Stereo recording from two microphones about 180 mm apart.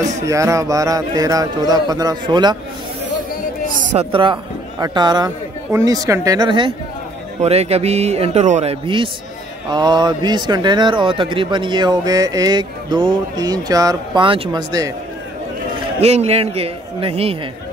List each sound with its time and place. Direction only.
0.3 s speech: 15° right (ahead or behind)
3.6 s a man's voice: 45° right (ahead or behind); by 6.7 s 25° right (ahead or behind)
7.4 s a man's voice: 35° right (ahead or behind)
16.0 s a man's voice: 35° right (ahead or behind)